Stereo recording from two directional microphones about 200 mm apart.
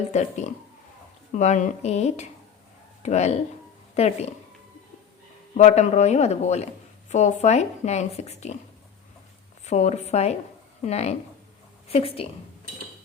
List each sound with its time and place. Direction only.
0.1 s speech: 35° left (ahead or behind)
5.5 s speech: 35° left (ahead or behind)
9.6 s a woman's voice: 35° left (ahead or behind)